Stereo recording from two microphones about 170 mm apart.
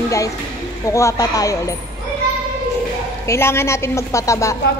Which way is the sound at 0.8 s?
20° left (ahead or behind).